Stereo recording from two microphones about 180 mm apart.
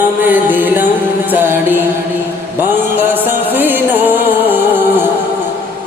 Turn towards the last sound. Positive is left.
turn(degrees=-10)  # may be behind; listen again after turning